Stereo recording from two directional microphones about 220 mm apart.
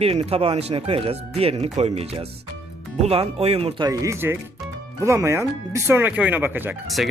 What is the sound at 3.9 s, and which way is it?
Speech, 15° right (ahead or behind).